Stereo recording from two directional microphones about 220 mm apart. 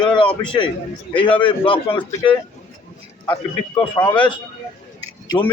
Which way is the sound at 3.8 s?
20° left (ahead or behind).